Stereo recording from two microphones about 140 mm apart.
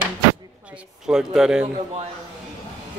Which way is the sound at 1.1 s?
5° right (ahead or behind).